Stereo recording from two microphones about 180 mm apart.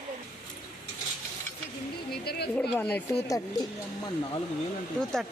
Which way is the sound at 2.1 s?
60° left (ahead or behind).